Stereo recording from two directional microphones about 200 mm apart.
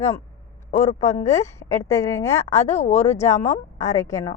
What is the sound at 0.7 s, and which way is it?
Speech, 35° left (ahead or behind).